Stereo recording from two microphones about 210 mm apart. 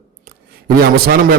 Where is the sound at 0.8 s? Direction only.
45° right (ahead or behind).